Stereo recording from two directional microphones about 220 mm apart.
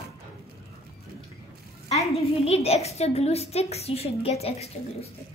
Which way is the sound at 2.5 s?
30° left (ahead or behind).